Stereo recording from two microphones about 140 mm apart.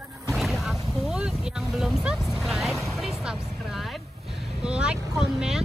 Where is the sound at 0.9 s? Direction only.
5° right (ahead or behind).